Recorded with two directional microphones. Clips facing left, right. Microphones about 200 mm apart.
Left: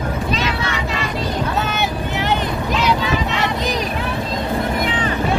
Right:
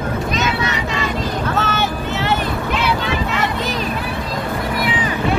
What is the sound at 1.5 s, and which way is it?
Vehicle, 15° left (ahead or behind).